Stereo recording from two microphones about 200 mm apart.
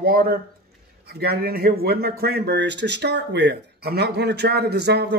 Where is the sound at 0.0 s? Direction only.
45° right (ahead or behind).